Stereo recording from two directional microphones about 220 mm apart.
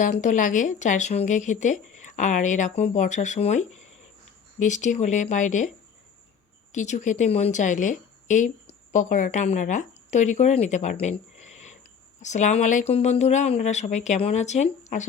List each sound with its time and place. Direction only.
0.0 s speech: 35° left (ahead or behind)
6.7 s a woman's voice: 35° left (ahead or behind)